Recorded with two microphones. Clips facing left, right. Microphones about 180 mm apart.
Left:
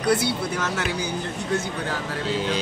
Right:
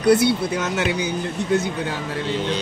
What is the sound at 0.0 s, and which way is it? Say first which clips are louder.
Speech: right 6 dB; 25° right (ahead or behind).